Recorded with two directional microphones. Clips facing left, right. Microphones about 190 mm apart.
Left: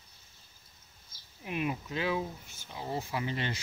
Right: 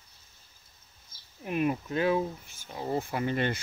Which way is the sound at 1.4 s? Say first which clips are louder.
Right 5 dB; 45° right (ahead or behind).